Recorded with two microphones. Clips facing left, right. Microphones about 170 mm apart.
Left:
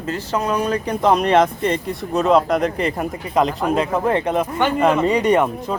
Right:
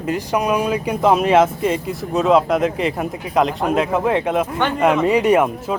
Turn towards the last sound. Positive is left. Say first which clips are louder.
# right 1 dB
turn(degrees=-5)  # may be behind; listen again after turning